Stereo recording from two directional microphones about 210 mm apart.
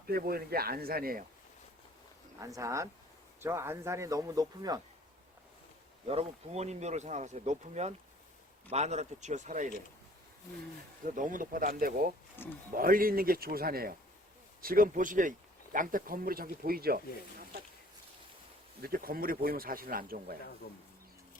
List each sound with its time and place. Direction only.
0.1 s speech: 45° right (ahead or behind)
2.4 s a man's voice: 15° right (ahead or behind)
6.1 s speech: 30° right (ahead or behind)
11.0 s speech: 40° right (ahead or behind)
12.4 s speech: 10° left (ahead or behind)
12.7 s speech: 45° right (ahead or behind)
18.8 s speech: 45° right (ahead or behind)
20.6 s speech: 45° left (ahead or behind)